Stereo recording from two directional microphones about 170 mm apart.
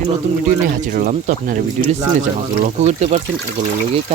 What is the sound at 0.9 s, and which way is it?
Speech, 50° right (ahead or behind).